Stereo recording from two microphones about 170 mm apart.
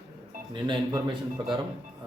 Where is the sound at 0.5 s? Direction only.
30° right (ahead or behind).